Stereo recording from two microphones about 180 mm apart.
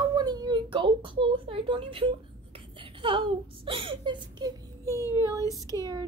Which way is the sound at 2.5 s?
30° right (ahead or behind).